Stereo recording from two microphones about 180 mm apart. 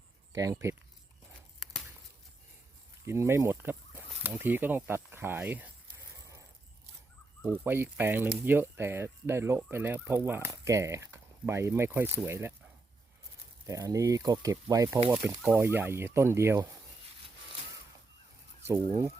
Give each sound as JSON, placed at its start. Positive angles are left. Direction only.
{"t": 0.3, "sound": "fowl", "side_deg": -20}
{"t": 1.5, "sound": "a sound", "side_deg": 0}
{"t": 3.1, "sound": "speech", "side_deg": -15}
{"t": 7.5, "sound": "fowl", "side_deg": -10}
{"t": 13.7, "sound": "fowl", "side_deg": -20}